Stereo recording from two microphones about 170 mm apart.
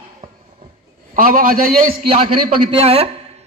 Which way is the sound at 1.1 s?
55° right (ahead or behind).